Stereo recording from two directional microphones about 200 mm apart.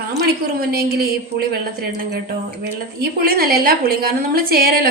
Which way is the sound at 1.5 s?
50° right (ahead or behind).